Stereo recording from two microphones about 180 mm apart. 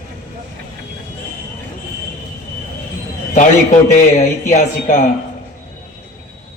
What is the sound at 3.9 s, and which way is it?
Speech, 40° left (ahead or behind).